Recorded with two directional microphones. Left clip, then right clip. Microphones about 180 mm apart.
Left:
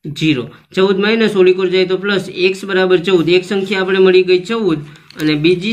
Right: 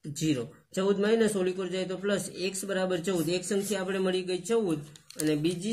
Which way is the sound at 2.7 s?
40° right (ahead or behind).